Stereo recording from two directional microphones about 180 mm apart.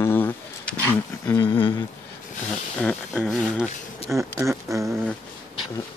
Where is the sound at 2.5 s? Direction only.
5° left (ahead or behind).